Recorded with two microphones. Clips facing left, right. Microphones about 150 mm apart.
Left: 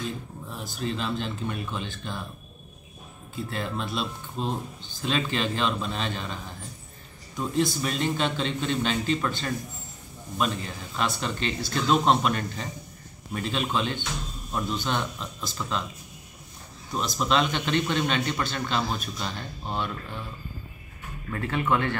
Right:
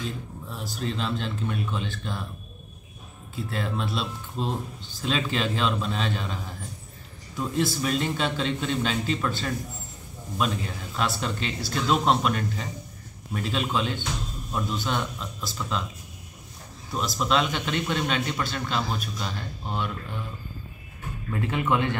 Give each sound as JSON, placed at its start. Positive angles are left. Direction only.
{"t": 0.5, "sound": "a man's voice", "side_deg": 0}
{"t": 3.4, "sound": "a man's voice", "side_deg": 0}
{"t": 16.9, "sound": "a man's voice", "side_deg": 0}
{"t": 21.3, "sound": "speech", "side_deg": -20}